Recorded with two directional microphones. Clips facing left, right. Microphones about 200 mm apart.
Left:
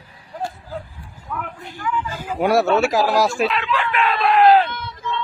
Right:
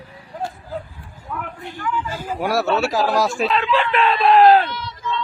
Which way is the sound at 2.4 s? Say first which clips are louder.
Left 5 dB; 20° left (ahead or behind).